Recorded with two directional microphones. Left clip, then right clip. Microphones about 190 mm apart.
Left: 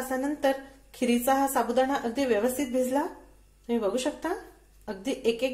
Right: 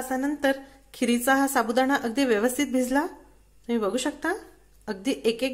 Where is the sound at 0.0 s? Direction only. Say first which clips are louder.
Right 1 dB; 20° right (ahead or behind).